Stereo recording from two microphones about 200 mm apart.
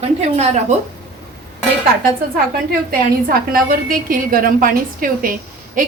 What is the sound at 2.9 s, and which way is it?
A woman's voice, 45° right (ahead or behind).